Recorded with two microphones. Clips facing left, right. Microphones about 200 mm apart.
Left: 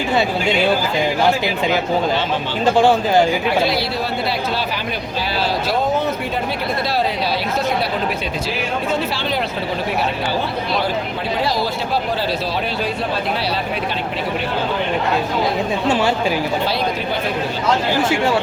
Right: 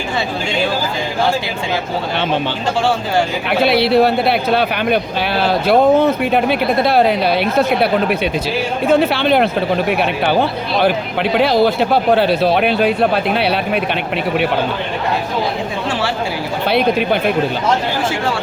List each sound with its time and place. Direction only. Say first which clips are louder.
3.7 s speech: right 9 dB; 65° right (ahead or behind)
8.9 s speech: right 13 dB; 60° right (ahead or behind)
11.3 s speech: right 9 dB; 60° right (ahead or behind)
16.6 s speech: right 6 dB; 60° right (ahead or behind)